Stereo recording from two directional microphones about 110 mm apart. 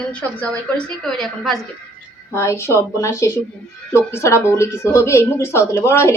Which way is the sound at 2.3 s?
25° left (ahead or behind).